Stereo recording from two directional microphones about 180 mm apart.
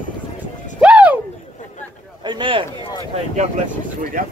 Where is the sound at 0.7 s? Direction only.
5° right (ahead or behind).